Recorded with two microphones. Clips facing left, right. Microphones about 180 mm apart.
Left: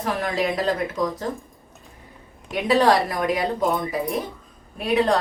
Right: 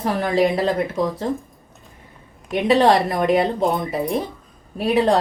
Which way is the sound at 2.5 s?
20° right (ahead or behind).